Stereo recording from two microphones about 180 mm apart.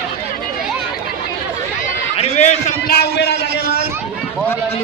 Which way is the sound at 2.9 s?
60° left (ahead or behind).